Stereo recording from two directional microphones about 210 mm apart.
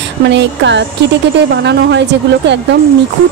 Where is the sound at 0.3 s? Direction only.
55° right (ahead or behind).